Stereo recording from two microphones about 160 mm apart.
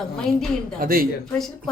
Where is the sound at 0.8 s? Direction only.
65° right (ahead or behind).